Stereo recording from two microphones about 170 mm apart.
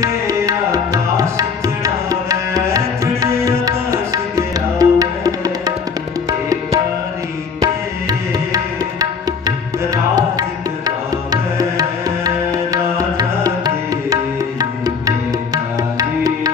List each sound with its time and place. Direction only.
0.0 s tabla: 20° right (ahead or behind)
2.0 s music: 20° right (ahead or behind)
7.6 s music: 20° right (ahead or behind)
12.7 s music: 20° right (ahead or behind)